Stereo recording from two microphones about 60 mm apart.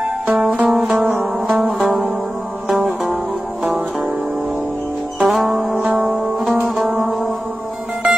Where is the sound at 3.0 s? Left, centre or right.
Centre.